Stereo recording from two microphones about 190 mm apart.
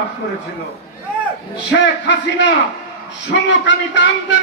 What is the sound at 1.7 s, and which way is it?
A man's voice, 70° left (ahead or behind).